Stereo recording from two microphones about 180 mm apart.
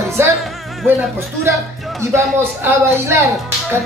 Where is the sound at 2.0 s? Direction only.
15° right (ahead or behind).